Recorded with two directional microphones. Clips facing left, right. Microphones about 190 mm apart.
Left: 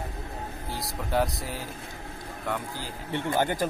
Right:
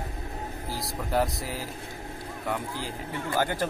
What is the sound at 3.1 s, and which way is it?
Speech, 20° left (ahead or behind).